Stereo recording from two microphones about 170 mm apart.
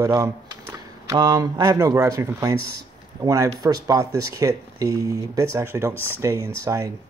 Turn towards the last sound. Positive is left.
turn(degrees=-15)  # may be behind; listen again after turning